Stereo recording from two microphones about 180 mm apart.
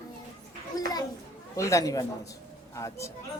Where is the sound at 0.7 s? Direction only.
20° left (ahead or behind).